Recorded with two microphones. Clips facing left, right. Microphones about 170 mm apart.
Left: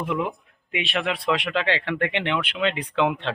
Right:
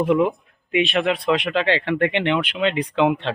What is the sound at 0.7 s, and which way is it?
Speech, 25° right (ahead or behind).